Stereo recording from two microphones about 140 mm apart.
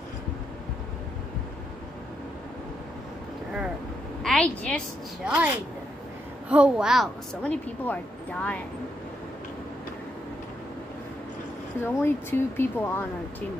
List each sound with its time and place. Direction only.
4.2 s a sound: 5° left (ahead or behind)
5.2 s speech: 10° right (ahead or behind)
6.5 s speech: 5° right (ahead or behind)
7.4 s speech: 10° left (ahead or behind)
11.8 s speech: 15° left (ahead or behind)